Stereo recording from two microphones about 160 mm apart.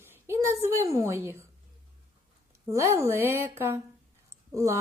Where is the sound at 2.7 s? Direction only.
15° right (ahead or behind).